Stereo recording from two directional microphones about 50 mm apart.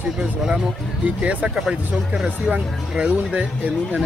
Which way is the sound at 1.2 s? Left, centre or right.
Right.